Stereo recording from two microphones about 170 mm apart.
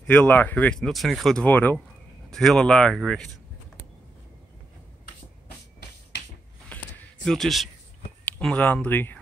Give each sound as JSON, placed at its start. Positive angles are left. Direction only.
{"t": 0.0, "sound": "speech", "side_deg": 10}
{"t": 7.2, "sound": "speech", "side_deg": 0}